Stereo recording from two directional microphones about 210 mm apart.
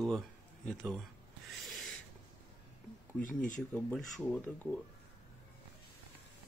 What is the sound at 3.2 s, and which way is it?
Speech, 40° left (ahead or behind).